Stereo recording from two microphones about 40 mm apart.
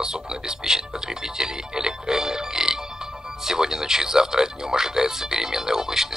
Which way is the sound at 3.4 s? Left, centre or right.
Centre.